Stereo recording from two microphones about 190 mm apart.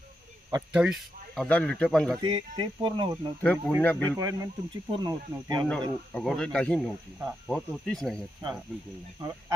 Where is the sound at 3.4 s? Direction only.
10° left (ahead or behind).